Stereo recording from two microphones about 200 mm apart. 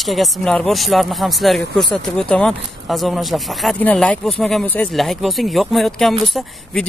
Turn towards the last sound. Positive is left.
turn(degrees=0)  # may be behind; listen again after turning